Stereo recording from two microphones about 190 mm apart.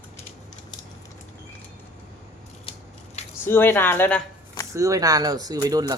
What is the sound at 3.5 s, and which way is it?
Speech, 10° left (ahead or behind).